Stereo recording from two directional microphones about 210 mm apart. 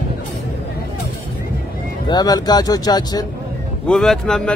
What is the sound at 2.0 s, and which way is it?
Speech, 20° left (ahead or behind).